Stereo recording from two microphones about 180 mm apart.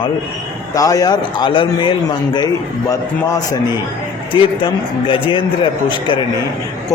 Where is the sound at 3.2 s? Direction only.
20° left (ahead or behind).